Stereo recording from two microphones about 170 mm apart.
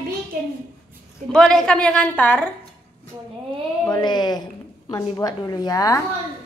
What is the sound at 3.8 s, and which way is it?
A woman's voice, 25° left (ahead or behind).